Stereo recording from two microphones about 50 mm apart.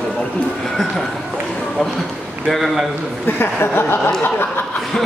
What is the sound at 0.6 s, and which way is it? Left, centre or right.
Speech, centre.